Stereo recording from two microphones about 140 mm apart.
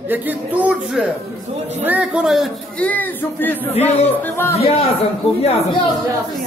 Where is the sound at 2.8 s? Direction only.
10° left (ahead or behind).